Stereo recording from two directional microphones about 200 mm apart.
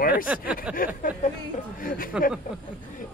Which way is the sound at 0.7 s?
45° left (ahead or behind).